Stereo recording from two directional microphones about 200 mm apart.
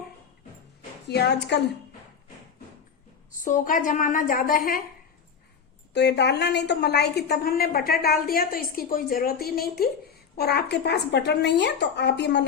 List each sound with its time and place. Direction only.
1.0 s speech: 55° left (ahead or behind)
3.4 s a woman's voice: 40° left (ahead or behind)
5.9 s a woman's voice: 60° left (ahead or behind)